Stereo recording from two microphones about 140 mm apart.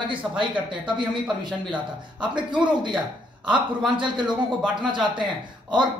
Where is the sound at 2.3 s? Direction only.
35° right (ahead or behind).